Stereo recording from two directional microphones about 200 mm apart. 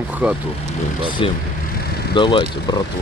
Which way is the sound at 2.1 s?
25° left (ahead or behind).